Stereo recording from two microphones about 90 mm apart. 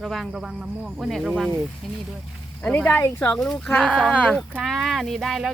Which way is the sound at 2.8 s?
35° left (ahead or behind).